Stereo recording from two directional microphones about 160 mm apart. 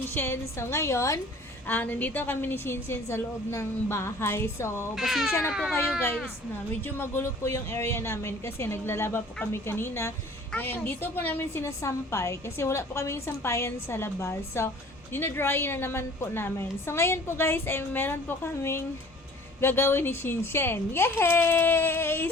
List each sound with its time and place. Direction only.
0.1 s a woman's voice: 15° left (ahead or behind)
4.9 s speech: centre (ahead or behind)
6.8 s a woman's voice: 15° left (ahead or behind)